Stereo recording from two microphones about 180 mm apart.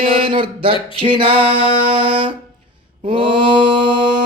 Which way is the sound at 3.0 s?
30° right (ahead or behind).